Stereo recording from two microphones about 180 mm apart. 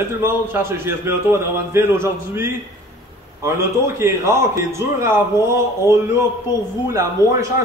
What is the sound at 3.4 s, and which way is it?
A man's voice, 15° right (ahead or behind).